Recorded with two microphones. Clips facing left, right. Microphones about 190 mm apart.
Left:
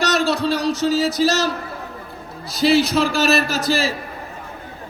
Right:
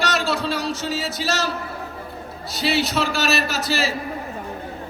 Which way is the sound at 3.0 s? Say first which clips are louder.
Left 4 dB; 40° right (ahead or behind).